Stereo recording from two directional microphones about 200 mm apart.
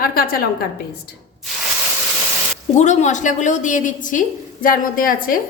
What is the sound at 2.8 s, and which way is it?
A woman's voice, 35° left (ahead or behind).